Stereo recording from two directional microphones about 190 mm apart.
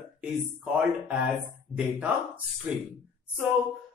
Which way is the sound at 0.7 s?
5° right (ahead or behind).